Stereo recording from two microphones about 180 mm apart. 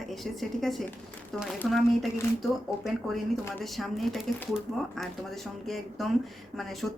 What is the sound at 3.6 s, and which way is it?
Speech, centre (ahead or behind).